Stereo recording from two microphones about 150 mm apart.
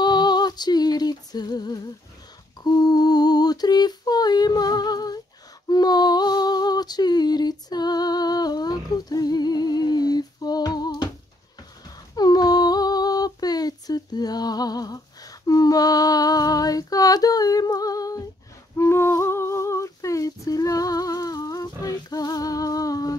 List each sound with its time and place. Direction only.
0.0 s female singing: 30° left (ahead or behind)
2.6 s a sound: 25° left (ahead or behind)
11.8 s music: 25° left (ahead or behind)
18.8 s humming: 15° left (ahead or behind)